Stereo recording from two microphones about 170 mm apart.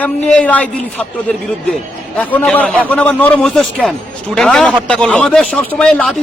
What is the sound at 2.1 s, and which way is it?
A man's voice, 10° left (ahead or behind).